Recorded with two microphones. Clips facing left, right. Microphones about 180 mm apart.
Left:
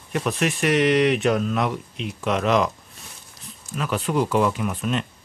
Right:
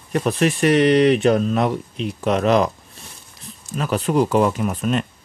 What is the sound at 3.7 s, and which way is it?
Speech, 40° right (ahead or behind).